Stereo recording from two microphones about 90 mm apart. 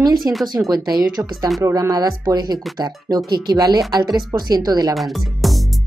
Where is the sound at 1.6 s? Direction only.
35° right (ahead or behind).